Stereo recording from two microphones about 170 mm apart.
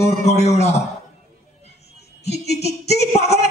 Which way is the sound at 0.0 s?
40° left (ahead or behind).